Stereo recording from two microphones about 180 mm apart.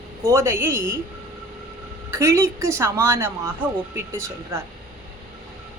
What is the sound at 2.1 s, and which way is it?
A woman's voice, 15° right (ahead or behind).